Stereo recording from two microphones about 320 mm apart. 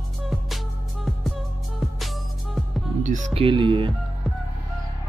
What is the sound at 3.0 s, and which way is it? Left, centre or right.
Speech, right.